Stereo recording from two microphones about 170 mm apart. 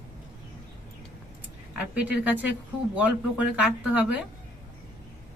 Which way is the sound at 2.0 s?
10° right (ahead or behind).